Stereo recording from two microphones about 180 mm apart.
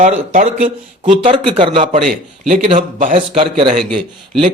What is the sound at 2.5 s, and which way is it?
Speech, 45° right (ahead or behind).